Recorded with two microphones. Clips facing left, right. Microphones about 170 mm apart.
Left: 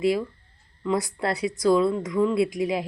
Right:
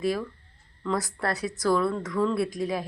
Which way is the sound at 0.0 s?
15° left (ahead or behind).